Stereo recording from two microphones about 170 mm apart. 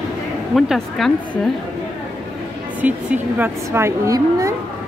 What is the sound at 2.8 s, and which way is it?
Speech, 10° right (ahead or behind).